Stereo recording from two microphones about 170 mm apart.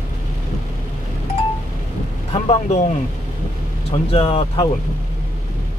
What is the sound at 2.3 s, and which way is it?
Speech, 40° left (ahead or behind).